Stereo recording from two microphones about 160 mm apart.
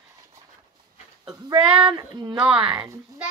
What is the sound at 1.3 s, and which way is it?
Female singing, 35° right (ahead or behind).